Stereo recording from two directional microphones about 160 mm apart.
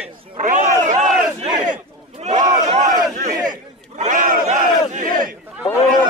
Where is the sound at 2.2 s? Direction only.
45° right (ahead or behind).